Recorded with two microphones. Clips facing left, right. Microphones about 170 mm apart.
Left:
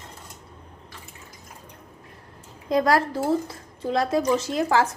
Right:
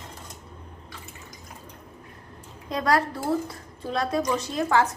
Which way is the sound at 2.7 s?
25° left (ahead or behind).